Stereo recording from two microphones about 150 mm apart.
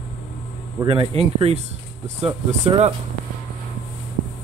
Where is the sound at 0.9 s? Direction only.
35° right (ahead or behind).